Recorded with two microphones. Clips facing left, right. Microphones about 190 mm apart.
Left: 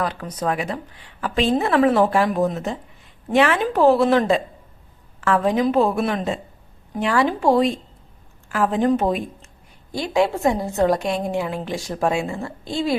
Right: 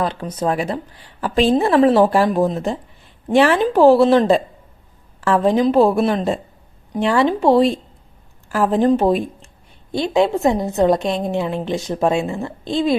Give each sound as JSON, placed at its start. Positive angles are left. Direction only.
{"t": 0.0, "sound": "a woman's voice", "side_deg": -25}